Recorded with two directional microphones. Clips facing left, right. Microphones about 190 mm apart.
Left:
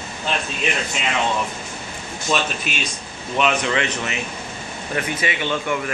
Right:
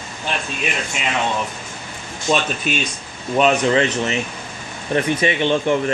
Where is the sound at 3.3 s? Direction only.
35° right (ahead or behind).